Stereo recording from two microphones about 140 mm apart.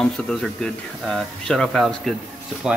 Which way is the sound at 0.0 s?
5° left (ahead or behind).